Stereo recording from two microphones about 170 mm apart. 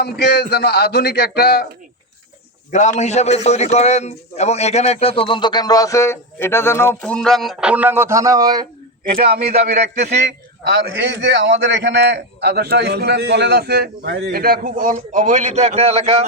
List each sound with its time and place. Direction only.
0.0 s a man's voice: 75° left (ahead or behind)
2.7 s a man's voice: 45° left (ahead or behind); by 8.6 s 20° right (ahead or behind)
9.4 s a man's voice: 40° right (ahead or behind)
10.7 s a man's voice: 90° right; by 16.2 s 35° right (ahead or behind)